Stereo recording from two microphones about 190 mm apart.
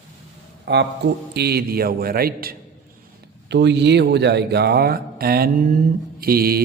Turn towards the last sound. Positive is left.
turn(degrees=-55)  # may be behind; listen again after turning